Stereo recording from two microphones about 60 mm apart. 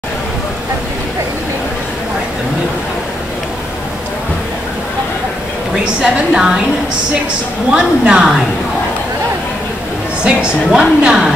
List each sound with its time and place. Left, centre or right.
5.9 s a woman's voice: centre
7.7 s a woman's voice: centre
10.2 s a woman's voice: centre